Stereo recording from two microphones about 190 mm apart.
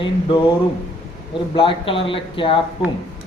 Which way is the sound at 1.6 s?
30° left (ahead or behind).